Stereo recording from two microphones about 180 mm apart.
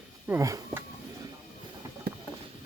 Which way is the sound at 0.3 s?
15° right (ahead or behind).